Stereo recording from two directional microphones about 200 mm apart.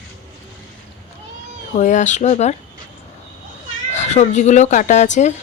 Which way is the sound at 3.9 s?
35° left (ahead or behind).